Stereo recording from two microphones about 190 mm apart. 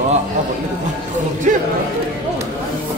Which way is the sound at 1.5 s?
45° right (ahead or behind).